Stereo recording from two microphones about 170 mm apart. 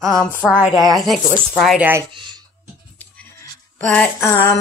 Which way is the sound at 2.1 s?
25° right (ahead or behind).